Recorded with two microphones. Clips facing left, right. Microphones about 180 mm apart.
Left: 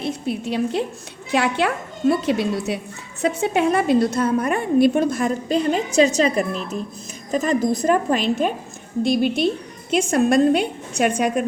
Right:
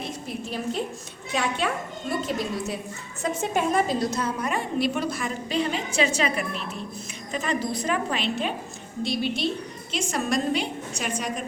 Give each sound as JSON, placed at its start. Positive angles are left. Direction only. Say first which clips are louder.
{"t": 0.0, "sound": "a woman's voice", "louder": "left 8 dB", "side_deg": 70}